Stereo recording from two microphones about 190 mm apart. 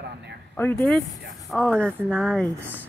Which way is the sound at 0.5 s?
10° left (ahead or behind).